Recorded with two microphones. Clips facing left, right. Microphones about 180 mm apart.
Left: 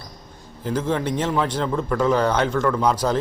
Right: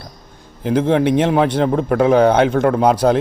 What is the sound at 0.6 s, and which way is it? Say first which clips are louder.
A man's voice: right 8 dB; 60° right (ahead or behind).